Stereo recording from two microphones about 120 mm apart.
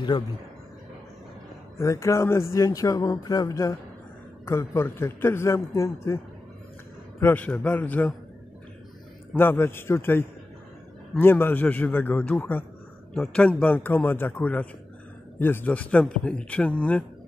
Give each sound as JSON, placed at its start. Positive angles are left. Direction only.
{"t": 1.8, "sound": "speech", "side_deg": 25}
{"t": 7.2, "sound": "speech", "side_deg": 15}
{"t": 9.3, "sound": "speech", "side_deg": 15}